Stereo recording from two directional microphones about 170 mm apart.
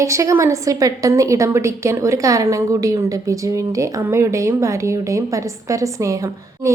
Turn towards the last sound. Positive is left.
turn(degrees=-20)  # may be behind; listen again after turning